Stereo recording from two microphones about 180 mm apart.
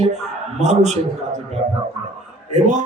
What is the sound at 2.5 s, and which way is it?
Speech, 40° right (ahead or behind).